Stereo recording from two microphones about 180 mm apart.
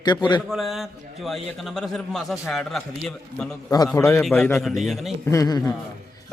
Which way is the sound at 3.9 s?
15° left (ahead or behind).